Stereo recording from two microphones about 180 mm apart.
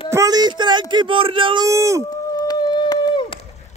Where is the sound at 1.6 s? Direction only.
15° right (ahead or behind).